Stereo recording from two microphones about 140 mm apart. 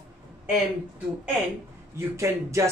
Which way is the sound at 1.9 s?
20° right (ahead or behind).